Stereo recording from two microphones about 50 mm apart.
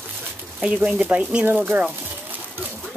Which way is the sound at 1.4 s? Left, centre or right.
Right.